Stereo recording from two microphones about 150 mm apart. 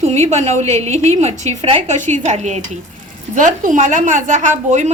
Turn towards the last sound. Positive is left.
turn(degrees=-50)  # may be behind; listen again after turning